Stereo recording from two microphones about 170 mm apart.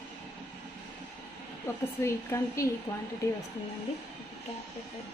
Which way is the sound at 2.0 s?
15° left (ahead or behind).